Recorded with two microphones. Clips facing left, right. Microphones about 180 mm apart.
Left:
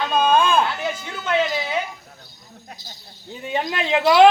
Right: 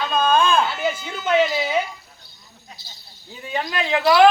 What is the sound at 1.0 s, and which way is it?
Speech, 20° right (ahead or behind).